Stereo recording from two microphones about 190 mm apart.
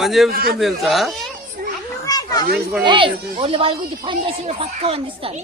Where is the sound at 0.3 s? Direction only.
50° right (ahead or behind).